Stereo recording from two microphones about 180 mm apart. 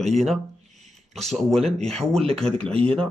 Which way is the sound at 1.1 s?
Centre (ahead or behind).